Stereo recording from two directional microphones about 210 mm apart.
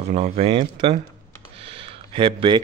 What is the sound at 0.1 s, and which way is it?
Speech, 30° right (ahead or behind).